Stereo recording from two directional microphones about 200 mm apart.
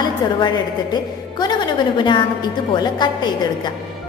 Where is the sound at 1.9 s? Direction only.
25° left (ahead or behind).